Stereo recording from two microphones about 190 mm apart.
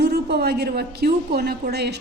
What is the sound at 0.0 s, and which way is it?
A woman's voice, 60° right (ahead or behind).